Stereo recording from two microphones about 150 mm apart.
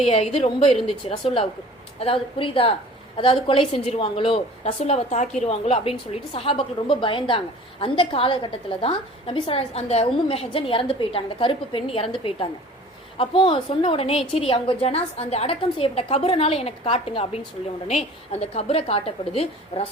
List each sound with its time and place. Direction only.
0.1 s a woman's voice: 40° left (ahead or behind)
4.8 s a woman's voice: 50° left (ahead or behind)
13.1 s a woman's voice: 35° left (ahead or behind)